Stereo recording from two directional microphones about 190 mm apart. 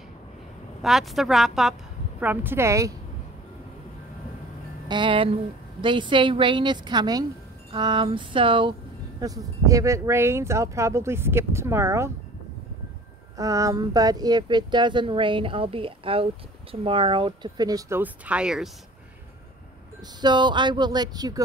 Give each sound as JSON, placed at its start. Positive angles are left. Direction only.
{"t": 0.8, "sound": "a woman's voice", "side_deg": 0}
{"t": 4.8, "sound": "speech", "side_deg": -25}
{"t": 13.4, "sound": "speech", "side_deg": -15}
{"t": 20.2, "sound": "speech", "side_deg": -25}